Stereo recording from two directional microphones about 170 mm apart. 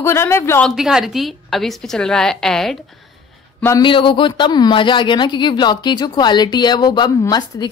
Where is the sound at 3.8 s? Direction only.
30° left (ahead or behind).